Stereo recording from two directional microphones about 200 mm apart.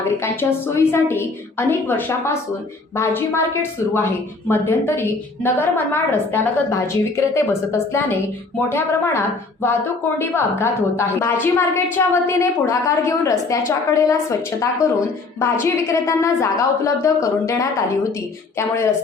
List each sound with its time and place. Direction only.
0.2 s a woman's voice: 10° left (ahead or behind)